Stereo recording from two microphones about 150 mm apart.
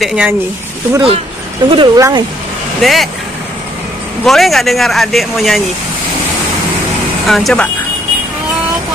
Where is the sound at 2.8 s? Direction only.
Centre (ahead or behind).